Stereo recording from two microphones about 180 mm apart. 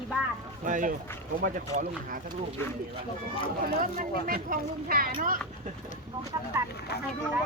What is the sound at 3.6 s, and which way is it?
Speech, 50° right (ahead or behind).